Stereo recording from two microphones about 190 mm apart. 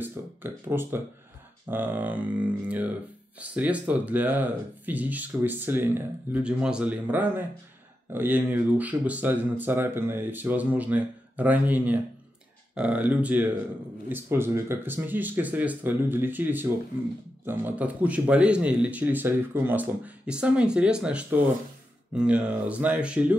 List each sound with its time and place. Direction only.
0.0 s speech: 10° right (ahead or behind)